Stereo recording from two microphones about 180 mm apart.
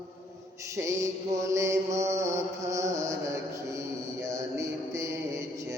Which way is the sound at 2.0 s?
15° right (ahead or behind).